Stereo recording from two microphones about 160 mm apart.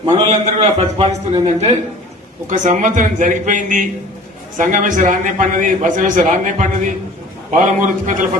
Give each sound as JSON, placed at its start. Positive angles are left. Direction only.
{"t": 0.3, "sound": "a man's voice", "side_deg": -40}
{"t": 2.5, "sound": "a man's voice", "side_deg": -55}